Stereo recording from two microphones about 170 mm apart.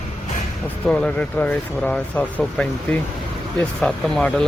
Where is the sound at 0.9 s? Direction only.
5° left (ahead or behind).